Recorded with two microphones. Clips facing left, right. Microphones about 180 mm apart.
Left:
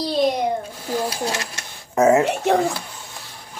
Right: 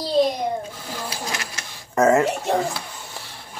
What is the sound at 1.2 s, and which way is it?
Speech, 30° left (ahead or behind).